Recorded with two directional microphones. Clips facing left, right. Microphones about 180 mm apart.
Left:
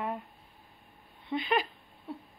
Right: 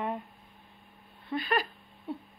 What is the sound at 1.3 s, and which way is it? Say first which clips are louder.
Speech: left 1 dB; 20° left (ahead or behind).